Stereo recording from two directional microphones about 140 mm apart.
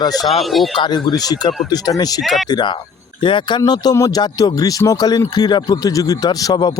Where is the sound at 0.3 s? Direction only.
Centre (ahead or behind).